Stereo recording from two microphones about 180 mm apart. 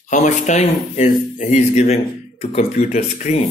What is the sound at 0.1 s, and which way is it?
Speech, 40° left (ahead or behind).